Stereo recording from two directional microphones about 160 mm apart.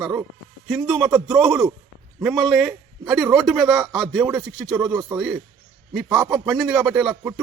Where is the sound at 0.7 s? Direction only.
Centre (ahead or behind).